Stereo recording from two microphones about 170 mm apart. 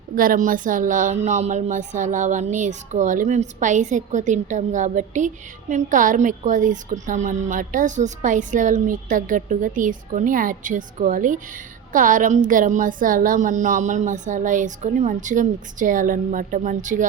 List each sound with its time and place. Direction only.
0.2 s speech: 55° right (ahead or behind)